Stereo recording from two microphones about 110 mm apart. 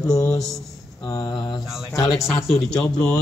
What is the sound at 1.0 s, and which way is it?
A man's voice, 25° left (ahead or behind).